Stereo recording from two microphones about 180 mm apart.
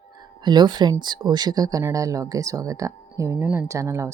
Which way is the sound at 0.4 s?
25° right (ahead or behind).